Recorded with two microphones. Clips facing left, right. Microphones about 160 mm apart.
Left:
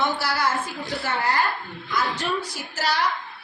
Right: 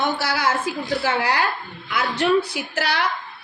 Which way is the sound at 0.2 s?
75° right (ahead or behind).